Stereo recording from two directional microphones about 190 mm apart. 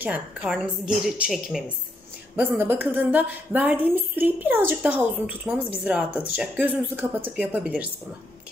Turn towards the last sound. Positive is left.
turn(degrees=-5)  # may be behind; listen again after turning